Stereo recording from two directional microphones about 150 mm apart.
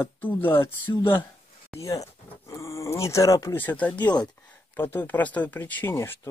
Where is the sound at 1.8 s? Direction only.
20° left (ahead or behind).